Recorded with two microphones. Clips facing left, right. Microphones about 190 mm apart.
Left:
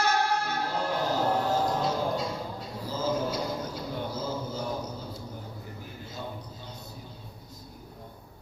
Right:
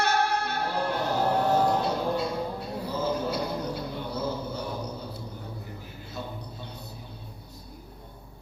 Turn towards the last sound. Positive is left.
turn(degrees=-65)  # may be behind; listen again after turning